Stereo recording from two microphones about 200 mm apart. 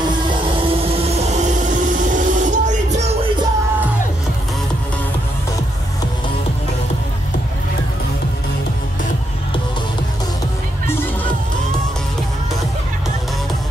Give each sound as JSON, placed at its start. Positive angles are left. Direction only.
{"t": 0.3, "sound": "music", "side_deg": -25}